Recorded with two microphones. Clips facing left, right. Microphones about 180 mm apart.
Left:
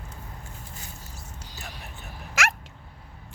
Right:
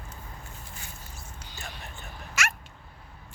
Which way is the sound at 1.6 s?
5° left (ahead or behind).